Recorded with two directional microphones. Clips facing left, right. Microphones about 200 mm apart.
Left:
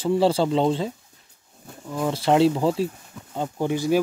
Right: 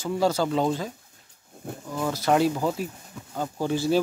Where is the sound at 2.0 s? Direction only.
25° left (ahead or behind).